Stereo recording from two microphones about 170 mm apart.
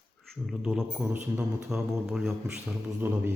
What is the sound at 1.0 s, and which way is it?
Speech, 10° right (ahead or behind).